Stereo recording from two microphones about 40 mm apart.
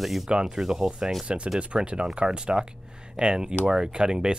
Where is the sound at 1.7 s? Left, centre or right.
Centre.